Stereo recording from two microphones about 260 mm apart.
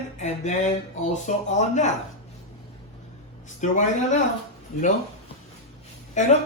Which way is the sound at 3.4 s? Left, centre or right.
Left.